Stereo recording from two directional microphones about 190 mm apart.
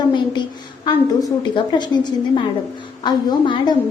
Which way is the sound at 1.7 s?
25° left (ahead or behind).